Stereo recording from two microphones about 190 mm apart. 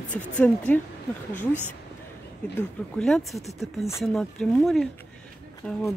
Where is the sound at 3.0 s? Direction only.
Centre (ahead or behind).